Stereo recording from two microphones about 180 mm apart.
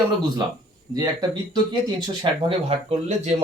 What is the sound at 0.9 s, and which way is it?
Speech, 20° right (ahead or behind).